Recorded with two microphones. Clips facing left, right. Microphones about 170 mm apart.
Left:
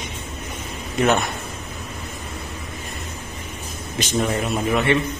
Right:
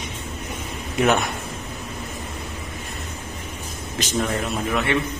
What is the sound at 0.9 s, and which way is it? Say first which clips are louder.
Speech: left 1 dB; 5° right (ahead or behind).